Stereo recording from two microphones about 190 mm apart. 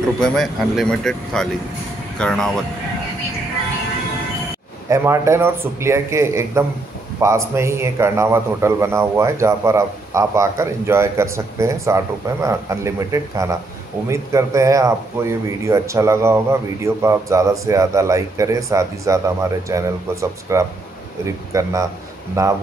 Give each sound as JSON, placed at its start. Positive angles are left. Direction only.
{"t": 0.2, "sound": "speech", "side_deg": 0}
{"t": 4.8, "sound": "a man's voice", "side_deg": -15}